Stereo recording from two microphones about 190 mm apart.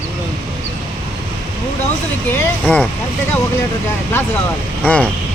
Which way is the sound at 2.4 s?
10° left (ahead or behind).